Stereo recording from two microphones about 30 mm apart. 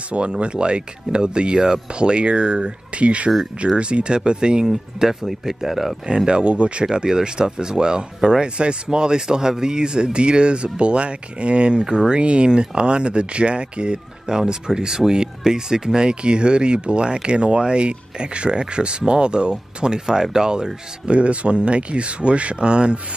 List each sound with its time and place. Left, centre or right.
0.4 s speech: right
4.6 s speech: centre
6.0 s speech: right
6.9 s speech: right
21.0 s speech: right